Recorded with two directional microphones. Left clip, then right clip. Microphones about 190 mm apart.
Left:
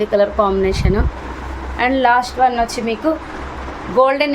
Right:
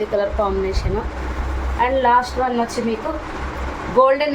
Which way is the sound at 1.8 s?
55° left (ahead or behind).